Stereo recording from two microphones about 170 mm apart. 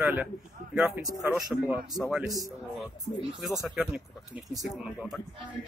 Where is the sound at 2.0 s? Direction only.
Centre (ahead or behind).